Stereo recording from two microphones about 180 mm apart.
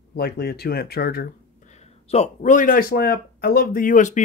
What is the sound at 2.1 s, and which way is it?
Speech, 40° left (ahead or behind).